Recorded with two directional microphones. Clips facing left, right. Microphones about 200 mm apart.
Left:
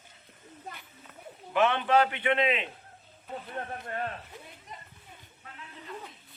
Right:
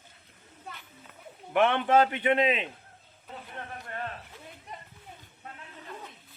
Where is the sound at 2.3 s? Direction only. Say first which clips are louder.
Right 2 dB; 15° right (ahead or behind).